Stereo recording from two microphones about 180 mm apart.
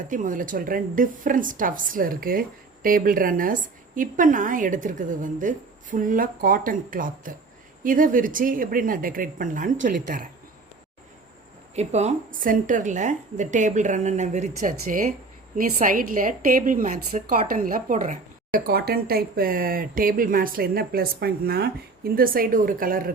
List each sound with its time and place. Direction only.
0.0 s a woman's voice: 45° right (ahead or behind)
11.7 s a woman's voice: 40° right (ahead or behind)